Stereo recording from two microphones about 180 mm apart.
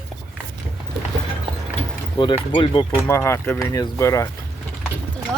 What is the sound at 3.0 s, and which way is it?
Speech, 15° left (ahead or behind).